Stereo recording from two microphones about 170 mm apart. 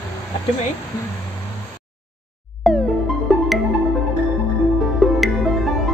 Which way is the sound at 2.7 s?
Centre (ahead or behind).